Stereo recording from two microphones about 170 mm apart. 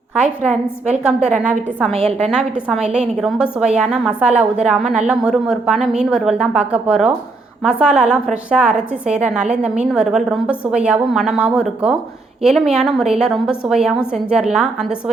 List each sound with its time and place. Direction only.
0.2 s a woman's voice: 5° right (ahead or behind)
1.9 s a woman's voice: 35° right (ahead or behind)
2.3 s a woman's voice: 5° right (ahead or behind)